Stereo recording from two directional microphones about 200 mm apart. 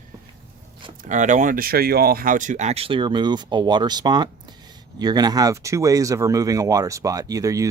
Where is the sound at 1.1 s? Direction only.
40° right (ahead or behind).